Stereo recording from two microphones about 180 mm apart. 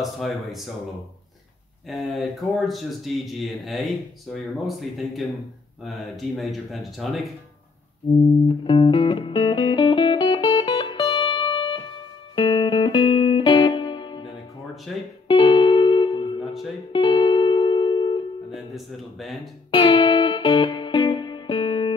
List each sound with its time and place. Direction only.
0.0 s speech: centre (ahead or behind)
1.9 s speech: centre (ahead or behind)
8.5 s music: 25° left (ahead or behind)
14.9 s speech: centre (ahead or behind)
15.2 s music: 25° left (ahead or behind)
18.5 s speech: centre (ahead or behind)
19.7 s music: 25° left (ahead or behind)